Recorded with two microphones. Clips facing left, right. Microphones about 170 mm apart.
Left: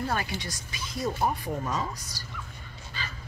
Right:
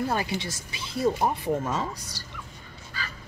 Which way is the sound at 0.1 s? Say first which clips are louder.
Right 3 dB; 20° right (ahead or behind).